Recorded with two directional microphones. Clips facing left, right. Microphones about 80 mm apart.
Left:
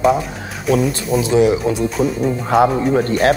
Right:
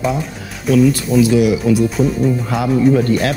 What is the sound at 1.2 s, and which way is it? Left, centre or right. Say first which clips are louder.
Speech: even; left.